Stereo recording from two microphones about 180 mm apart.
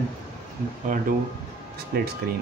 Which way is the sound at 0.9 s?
45° right (ahead or behind).